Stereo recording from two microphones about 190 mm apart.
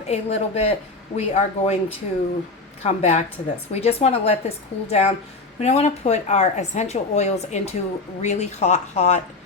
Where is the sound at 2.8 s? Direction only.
35° left (ahead or behind).